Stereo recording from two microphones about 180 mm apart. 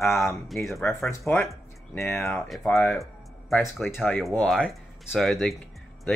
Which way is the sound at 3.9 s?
10° left (ahead or behind).